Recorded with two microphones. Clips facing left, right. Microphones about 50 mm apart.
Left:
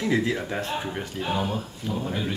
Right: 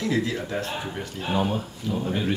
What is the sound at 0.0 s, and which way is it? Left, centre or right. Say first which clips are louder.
Speech: left 1 dB; centre.